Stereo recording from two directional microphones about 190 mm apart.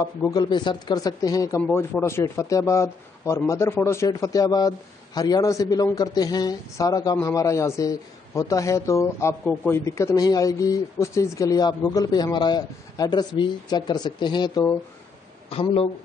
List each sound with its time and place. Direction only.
0.0 s a man's voice: 20° left (ahead or behind)
15.5 s speech: 30° left (ahead or behind)